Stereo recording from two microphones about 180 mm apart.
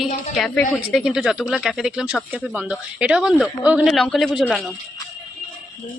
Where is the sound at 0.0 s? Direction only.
Centre (ahead or behind).